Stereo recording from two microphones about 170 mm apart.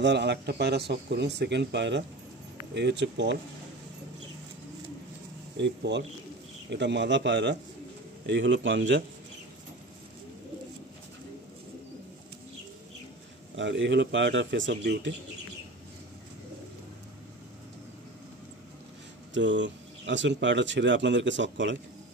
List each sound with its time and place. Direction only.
0.0 s speech: 90° right
5.6 s speech: 90° right
13.6 s speech: 90° right
19.3 s speech: 90° right